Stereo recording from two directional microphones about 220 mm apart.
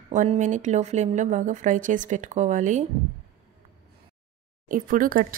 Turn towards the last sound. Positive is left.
turn(degrees=-40)  # may be behind; listen again after turning